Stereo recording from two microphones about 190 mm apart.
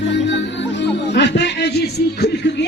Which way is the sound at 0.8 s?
65° left (ahead or behind).